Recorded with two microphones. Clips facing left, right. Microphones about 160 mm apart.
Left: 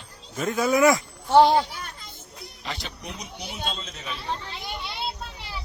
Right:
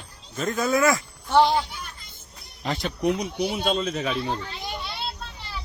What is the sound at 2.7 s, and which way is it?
Speech, 55° right (ahead or behind).